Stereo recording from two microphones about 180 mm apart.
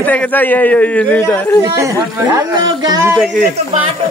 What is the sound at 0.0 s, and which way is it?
A man's voice, 10° left (ahead or behind).